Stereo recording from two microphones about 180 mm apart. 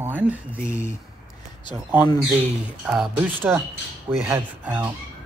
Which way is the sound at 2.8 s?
5° right (ahead or behind).